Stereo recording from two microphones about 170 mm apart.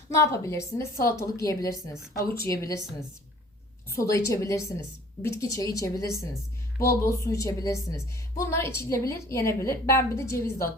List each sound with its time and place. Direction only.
0.1 s a woman's voice: 20° left (ahead or behind)
3.9 s a woman's voice: 20° left (ahead or behind)